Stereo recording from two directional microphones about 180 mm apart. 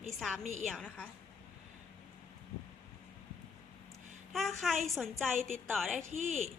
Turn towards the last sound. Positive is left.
turn(degrees=-40)  # may be behind; listen again after turning